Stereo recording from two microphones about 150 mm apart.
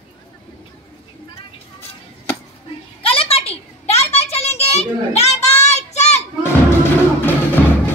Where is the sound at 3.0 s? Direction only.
40° left (ahead or behind).